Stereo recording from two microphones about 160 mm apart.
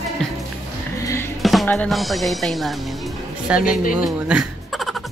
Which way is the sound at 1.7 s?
5° left (ahead or behind).